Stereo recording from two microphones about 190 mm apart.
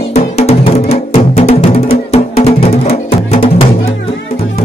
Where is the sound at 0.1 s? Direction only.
35° left (ahead or behind).